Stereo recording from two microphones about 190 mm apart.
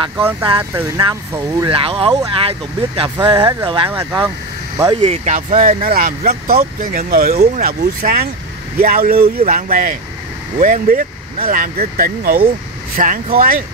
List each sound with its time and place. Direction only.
0.2 s speech: 10° right (ahead or behind)
1.7 s speech: 30° right (ahead or behind)
3.9 s speech: 10° right (ahead or behind)
4.9 s speech: 30° right (ahead or behind)